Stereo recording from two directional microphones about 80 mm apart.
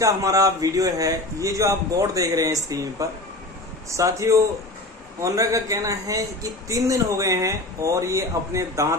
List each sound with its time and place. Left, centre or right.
0.0 s a man's voice: right